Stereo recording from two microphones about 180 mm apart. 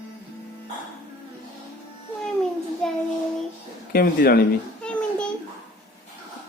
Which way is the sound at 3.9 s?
55° left (ahead or behind).